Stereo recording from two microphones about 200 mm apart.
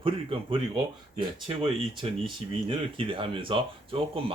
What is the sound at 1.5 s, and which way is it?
Speech, 25° right (ahead or behind).